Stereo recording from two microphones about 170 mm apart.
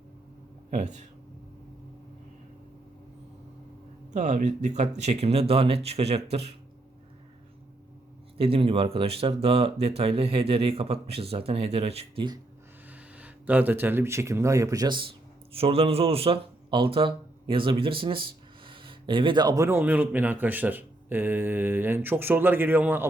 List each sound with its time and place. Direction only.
0.7 s speech: 45° right (ahead or behind)
4.1 s speech: 45° right (ahead or behind)
8.4 s speech: 35° right (ahead or behind)
12.9 s speech: 10° right (ahead or behind); by 15.0 s 25° right (ahead or behind)
15.5 s a man's voice: 35° right (ahead or behind); by 23.0 s 10° right (ahead or behind)